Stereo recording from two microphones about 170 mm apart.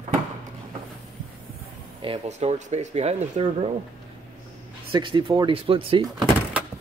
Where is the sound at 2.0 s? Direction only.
35° right (ahead or behind).